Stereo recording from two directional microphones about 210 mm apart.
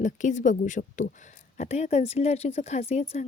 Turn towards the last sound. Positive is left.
turn(degrees=30)  # may be behind; listen again after turning